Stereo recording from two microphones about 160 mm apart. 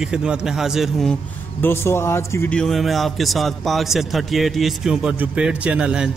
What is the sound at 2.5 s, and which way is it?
A man's voice, centre (ahead or behind).